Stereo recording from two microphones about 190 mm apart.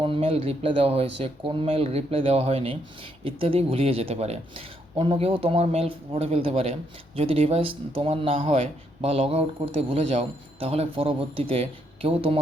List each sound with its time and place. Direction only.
0.0 s speech: 30° right (ahead or behind)